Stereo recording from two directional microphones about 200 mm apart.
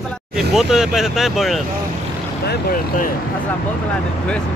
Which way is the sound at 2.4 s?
55° left (ahead or behind).